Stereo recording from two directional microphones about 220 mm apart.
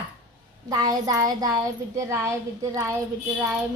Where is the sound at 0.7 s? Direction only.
15° right (ahead or behind).